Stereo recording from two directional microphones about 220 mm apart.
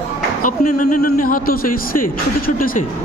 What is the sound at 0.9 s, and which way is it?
Speech, 40° left (ahead or behind).